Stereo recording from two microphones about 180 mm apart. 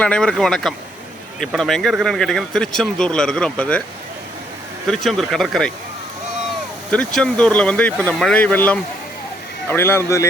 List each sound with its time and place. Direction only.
0.0 s speech: 5° left (ahead or behind)
5.0 s speech: centre (ahead or behind)
6.9 s speech: 5° left (ahead or behind)